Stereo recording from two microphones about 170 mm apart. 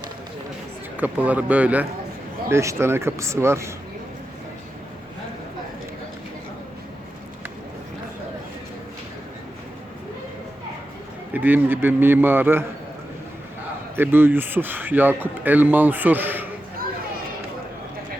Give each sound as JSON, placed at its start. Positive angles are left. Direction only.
{"t": 0.9, "sound": "speech", "side_deg": -10}
{"t": 11.3, "sound": "speech", "side_deg": -10}
{"t": 13.9, "sound": "speech", "side_deg": -10}